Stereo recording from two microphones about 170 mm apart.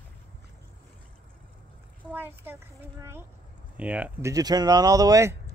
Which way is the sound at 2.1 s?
10° right (ahead or behind).